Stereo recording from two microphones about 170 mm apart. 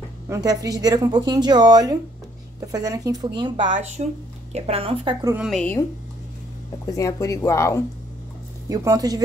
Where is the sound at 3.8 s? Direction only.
45° right (ahead or behind).